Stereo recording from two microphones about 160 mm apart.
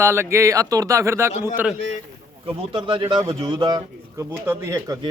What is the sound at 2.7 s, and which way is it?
Speech, 30° right (ahead or behind).